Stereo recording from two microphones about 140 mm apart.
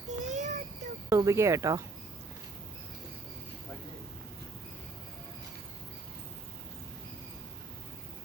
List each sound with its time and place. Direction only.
0.1 s child singing: 55° right (ahead or behind)
1.1 s speech: 20° right (ahead or behind)